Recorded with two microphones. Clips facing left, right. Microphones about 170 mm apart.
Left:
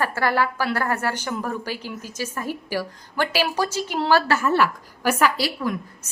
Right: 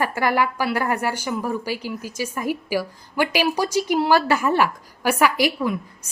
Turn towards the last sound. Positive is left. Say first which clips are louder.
# right 2 dB
turn(degrees=-10)  # may be behind; listen again after turning